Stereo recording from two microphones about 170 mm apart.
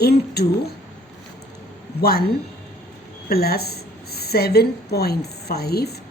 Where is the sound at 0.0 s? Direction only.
70° left (ahead or behind).